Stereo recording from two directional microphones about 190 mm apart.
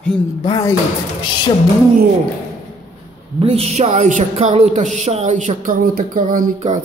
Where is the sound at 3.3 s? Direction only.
30° right (ahead or behind).